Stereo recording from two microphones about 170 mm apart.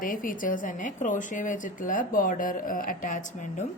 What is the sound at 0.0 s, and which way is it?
A woman's voice, 55° left (ahead or behind).